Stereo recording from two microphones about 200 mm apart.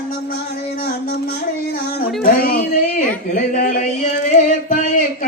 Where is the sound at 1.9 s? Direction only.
45° left (ahead or behind).